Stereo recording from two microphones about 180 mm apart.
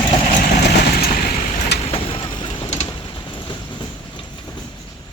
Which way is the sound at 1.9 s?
30° left (ahead or behind).